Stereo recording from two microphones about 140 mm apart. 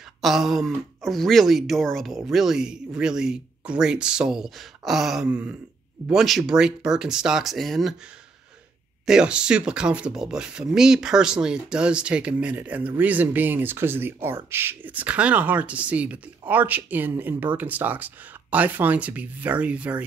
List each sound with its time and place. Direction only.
0.2 s speech: centre (ahead or behind)
9.0 s speech: 5° right (ahead or behind)